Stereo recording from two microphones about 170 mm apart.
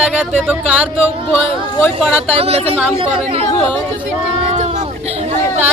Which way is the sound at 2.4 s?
35° right (ahead or behind).